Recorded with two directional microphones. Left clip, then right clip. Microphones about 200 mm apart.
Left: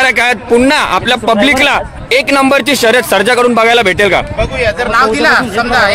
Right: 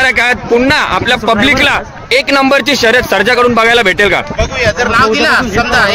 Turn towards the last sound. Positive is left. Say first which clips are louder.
# even
turn(degrees=-10)  # may be behind; listen again after turning